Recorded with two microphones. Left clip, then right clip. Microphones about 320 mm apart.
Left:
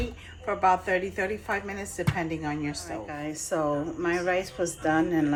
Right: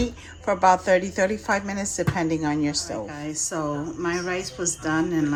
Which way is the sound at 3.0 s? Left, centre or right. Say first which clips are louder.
Right 4 dB; centre.